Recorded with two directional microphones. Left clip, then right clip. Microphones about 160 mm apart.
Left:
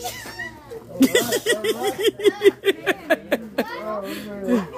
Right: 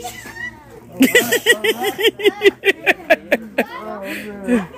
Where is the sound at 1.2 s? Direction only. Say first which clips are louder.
Right 6 dB; 20° right (ahead or behind).